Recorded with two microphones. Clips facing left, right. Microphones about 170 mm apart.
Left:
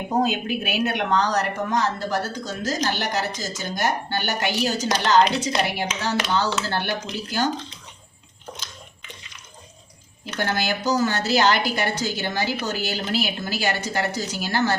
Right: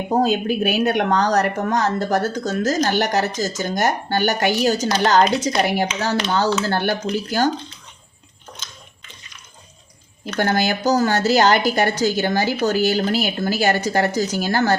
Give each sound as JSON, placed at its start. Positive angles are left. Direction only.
{"t": 0.2, "sound": "a woman's voice", "side_deg": -40}
{"t": 10.3, "sound": "a woman's voice", "side_deg": -45}